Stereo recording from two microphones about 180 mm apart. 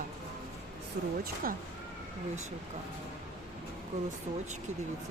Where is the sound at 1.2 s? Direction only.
50° right (ahead or behind).